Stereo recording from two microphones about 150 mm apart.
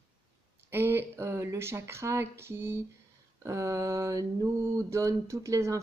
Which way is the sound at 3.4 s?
20° right (ahead or behind).